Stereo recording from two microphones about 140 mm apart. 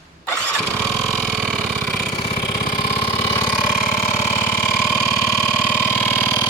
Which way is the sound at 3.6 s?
65° left (ahead or behind).